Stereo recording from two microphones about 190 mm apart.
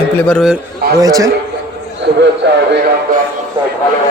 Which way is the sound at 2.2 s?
65° right (ahead or behind).